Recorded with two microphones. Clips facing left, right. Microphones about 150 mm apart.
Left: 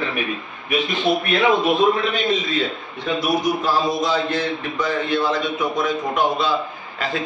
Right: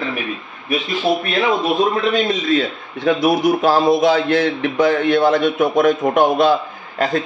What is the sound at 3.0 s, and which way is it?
A man's voice, 60° right (ahead or behind).